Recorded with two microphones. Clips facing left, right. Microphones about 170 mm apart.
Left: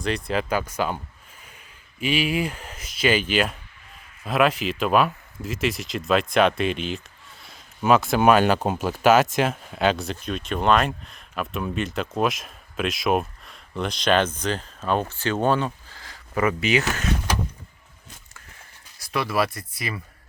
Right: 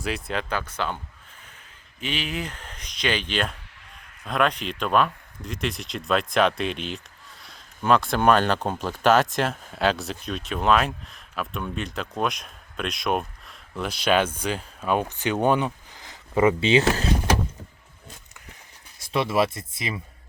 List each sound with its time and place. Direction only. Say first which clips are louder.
0.0 s speech: left 4 dB; centre (ahead or behind)
0.5 s speech: left 4 dB; 10° left (ahead or behind); by 17.1 s 30° right (ahead or behind)
18.9 s speech: right 2 dB; 25° right (ahead or behind)